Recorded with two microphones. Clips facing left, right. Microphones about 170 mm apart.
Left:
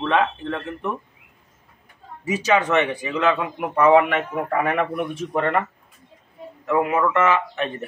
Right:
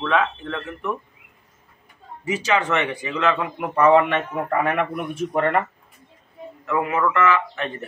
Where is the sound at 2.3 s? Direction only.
15° left (ahead or behind).